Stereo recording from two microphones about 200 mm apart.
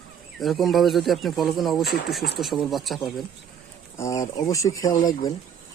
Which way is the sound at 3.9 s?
15° left (ahead or behind).